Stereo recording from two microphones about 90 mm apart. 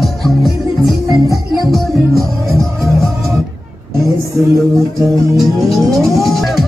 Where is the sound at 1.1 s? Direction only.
40° right (ahead or behind).